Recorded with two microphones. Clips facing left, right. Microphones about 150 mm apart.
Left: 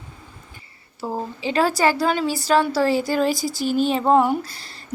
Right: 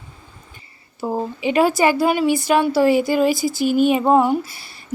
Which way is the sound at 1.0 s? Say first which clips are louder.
Right 4 dB; 15° right (ahead or behind).